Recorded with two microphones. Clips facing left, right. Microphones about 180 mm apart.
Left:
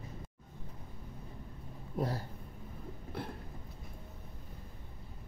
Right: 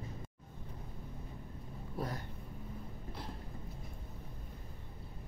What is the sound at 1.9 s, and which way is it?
Speech, 30° left (ahead or behind).